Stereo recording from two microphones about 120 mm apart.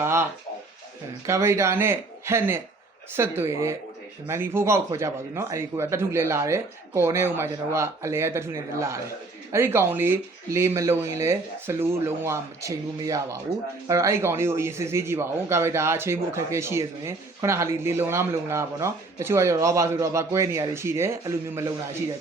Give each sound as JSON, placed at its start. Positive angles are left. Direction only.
{"t": 0.0, "sound": "speech", "side_deg": -25}
{"t": 1.3, "sound": "speech", "side_deg": -20}